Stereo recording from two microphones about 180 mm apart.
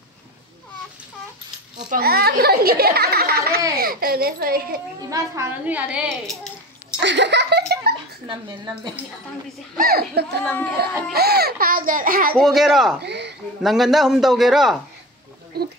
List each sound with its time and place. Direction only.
1.9 s a child's voice: 60° right (ahead or behind)
5.1 s a child's voice: 15° right (ahead or behind); by 6.5 s centre (ahead or behind)
7.0 s giggle: 80° right
8.3 s speech: 25° right (ahead or behind)
9.8 s a child's voice: 55° right (ahead or behind)
10.4 s speech: 5° left (ahead or behind)
11.1 s speech: 60° right (ahead or behind)
12.4 s a man's voice: centre (ahead or behind)
13.0 s a sound: 70° right (ahead or behind)
13.6 s a man's voice: centre (ahead or behind)
15.5 s a sound: 60° right (ahead or behind)